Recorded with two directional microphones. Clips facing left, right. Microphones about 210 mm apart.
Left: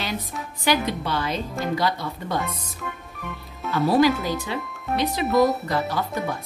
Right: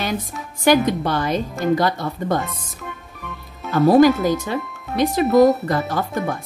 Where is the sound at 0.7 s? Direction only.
50° right (ahead or behind).